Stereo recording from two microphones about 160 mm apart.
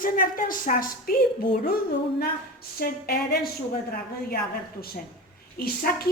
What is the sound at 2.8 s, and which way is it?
Speech, 70° left (ahead or behind).